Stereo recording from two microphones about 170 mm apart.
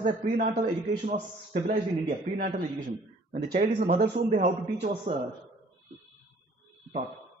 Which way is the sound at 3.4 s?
60° right (ahead or behind).